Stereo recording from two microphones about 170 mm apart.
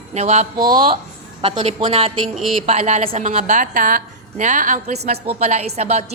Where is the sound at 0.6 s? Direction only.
55° right (ahead or behind).